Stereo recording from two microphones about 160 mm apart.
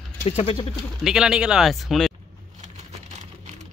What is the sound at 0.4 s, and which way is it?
Speech, 35° left (ahead or behind).